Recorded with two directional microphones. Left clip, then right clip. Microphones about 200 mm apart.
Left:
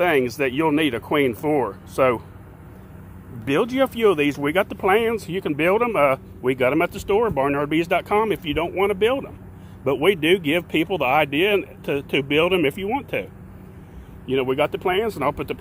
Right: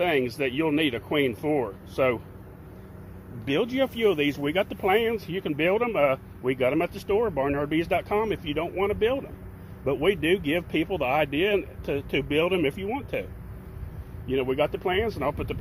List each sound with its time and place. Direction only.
0.0 s speech: 10° left (ahead or behind)
3.4 s speech: 10° left (ahead or behind)